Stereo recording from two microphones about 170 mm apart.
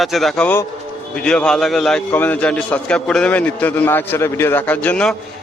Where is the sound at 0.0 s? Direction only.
Centre (ahead or behind).